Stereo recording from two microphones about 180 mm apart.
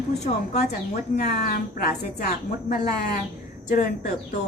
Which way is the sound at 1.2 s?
60° left (ahead or behind).